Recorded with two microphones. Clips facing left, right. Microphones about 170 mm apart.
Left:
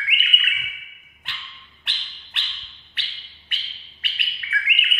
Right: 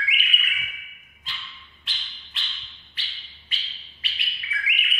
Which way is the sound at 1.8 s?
70° left (ahead or behind).